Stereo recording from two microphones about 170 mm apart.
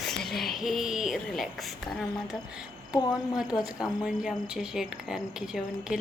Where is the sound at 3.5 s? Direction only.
20° left (ahead or behind).